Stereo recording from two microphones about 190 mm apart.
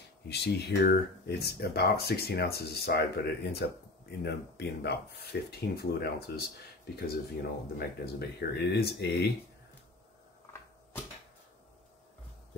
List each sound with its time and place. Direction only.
0.3 s speech: 60° left (ahead or behind)
7.7 s speech: 55° left (ahead or behind)